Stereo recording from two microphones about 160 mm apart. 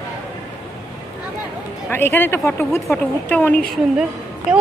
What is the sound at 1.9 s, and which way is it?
Speech, 15° left (ahead or behind).